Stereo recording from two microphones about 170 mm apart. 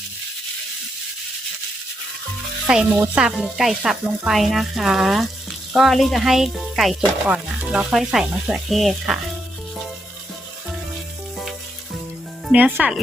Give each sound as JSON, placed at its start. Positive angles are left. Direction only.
{"t": 2.7, "sound": "speech", "side_deg": -5}
{"t": 12.5, "sound": "speech", "side_deg": -10}